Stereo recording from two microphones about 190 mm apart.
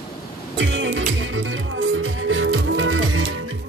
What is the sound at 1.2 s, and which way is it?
Music, 90° right.